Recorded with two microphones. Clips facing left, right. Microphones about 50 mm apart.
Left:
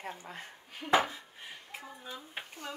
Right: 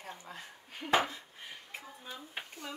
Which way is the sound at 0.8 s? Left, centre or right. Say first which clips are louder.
Left 2 dB; left.